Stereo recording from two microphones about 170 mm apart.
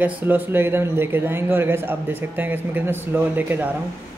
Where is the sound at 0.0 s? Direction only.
10° right (ahead or behind).